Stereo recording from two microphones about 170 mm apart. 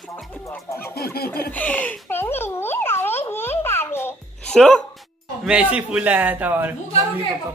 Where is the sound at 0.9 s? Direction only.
65° left (ahead or behind).